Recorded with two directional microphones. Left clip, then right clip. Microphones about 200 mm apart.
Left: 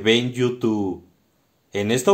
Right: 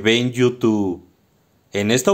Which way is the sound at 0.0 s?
30° right (ahead or behind).